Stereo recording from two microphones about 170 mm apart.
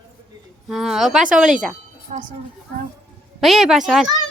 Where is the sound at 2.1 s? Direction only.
45° right (ahead or behind).